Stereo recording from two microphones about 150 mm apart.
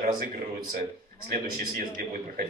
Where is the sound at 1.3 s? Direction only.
75° right (ahead or behind).